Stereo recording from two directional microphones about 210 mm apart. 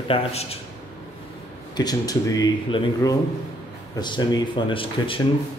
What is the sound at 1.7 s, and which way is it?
Speech, 20° left (ahead or behind).